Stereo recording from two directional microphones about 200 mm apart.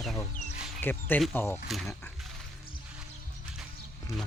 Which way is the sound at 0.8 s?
10° left (ahead or behind).